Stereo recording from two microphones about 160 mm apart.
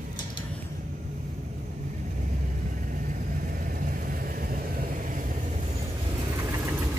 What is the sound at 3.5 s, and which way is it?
Vehicle, 60° right (ahead or behind).